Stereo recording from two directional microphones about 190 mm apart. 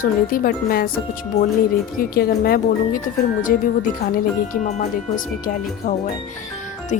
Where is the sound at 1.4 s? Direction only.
35° left (ahead or behind).